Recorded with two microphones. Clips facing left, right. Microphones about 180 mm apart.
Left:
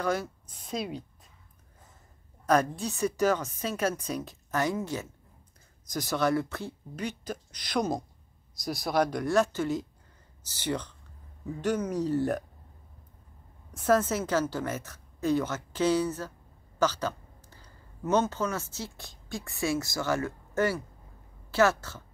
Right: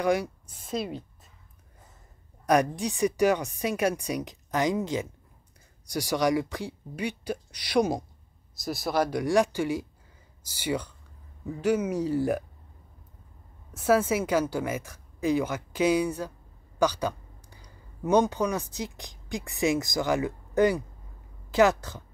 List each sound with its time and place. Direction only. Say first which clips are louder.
0.0 s speech: right 4 dB; 15° right (ahead or behind)
0.6 s a woman's voice: right 2 dB; centre (ahead or behind)
2.4 s speech: right 2 dB; 15° right (ahead or behind)
13.7 s a woman's voice: right 2 dB; 10° right (ahead or behind)